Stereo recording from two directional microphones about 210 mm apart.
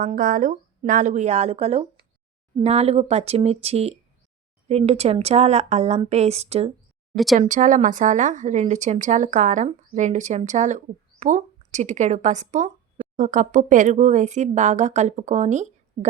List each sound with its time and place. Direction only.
0.0 s a woman's voice: 40° right (ahead or behind)
7.1 s speech: centre (ahead or behind)
7.3 s a woman's voice: 35° right (ahead or behind)